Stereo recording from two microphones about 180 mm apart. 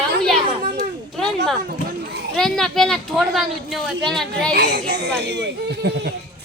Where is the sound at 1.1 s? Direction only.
Centre (ahead or behind).